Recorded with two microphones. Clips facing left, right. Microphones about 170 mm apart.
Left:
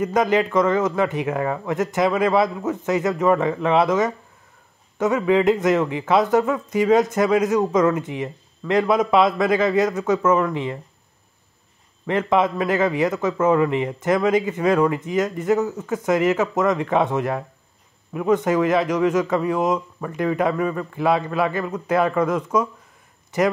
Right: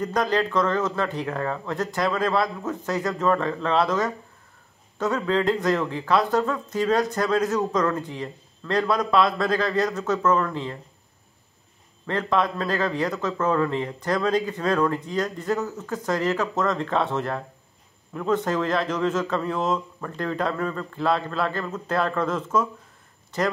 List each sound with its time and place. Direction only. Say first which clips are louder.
0.1 s a man's voice: left 4 dB; 20° left (ahead or behind)
12.1 s a man's voice: left 4 dB; 20° left (ahead or behind)